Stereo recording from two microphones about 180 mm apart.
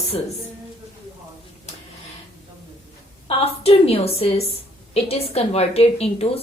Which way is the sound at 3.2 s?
35° left (ahead or behind).